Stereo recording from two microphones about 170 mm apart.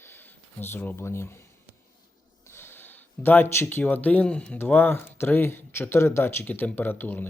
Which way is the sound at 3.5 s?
15° left (ahead or behind).